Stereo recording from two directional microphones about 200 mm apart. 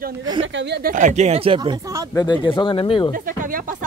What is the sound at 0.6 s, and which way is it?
Speech, 55° right (ahead or behind).